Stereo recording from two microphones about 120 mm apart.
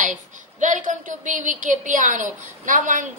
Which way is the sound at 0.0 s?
90° right.